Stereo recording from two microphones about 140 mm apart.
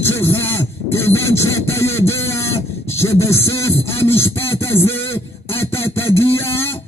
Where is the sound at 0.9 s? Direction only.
20° left (ahead or behind).